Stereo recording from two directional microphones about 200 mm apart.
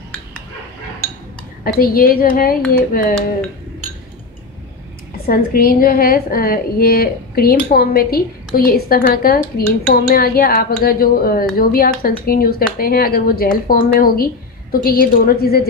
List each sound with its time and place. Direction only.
1.6 s a woman's voice: 45° left (ahead or behind)
5.2 s a woman's voice: 50° left (ahead or behind)